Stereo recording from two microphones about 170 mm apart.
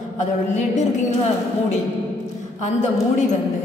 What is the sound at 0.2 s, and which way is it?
Speech, 45° left (ahead or behind).